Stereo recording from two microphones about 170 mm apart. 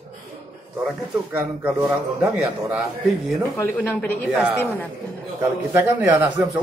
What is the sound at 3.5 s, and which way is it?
A woman's voice, 10° left (ahead or behind).